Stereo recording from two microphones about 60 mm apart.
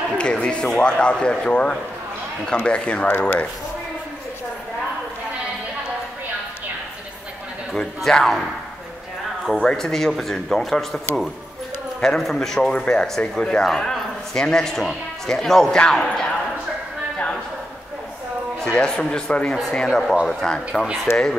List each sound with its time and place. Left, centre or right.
0.2 s a man's voice: centre
7.7 s a man's voice: centre
9.5 s a man's voice: centre
13.2 s speech: left
13.6 s a man's voice: centre
15.8 s a man's voice: centre
18.8 s a man's voice: centre
21.1 s speech: left